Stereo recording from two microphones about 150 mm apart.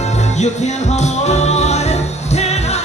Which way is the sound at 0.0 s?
50° left (ahead or behind).